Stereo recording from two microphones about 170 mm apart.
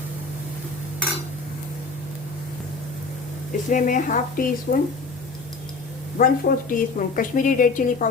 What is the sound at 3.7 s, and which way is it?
A woman's voice, 50° left (ahead or behind).